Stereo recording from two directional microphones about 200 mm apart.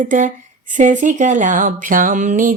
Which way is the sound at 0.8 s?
40° right (ahead or behind).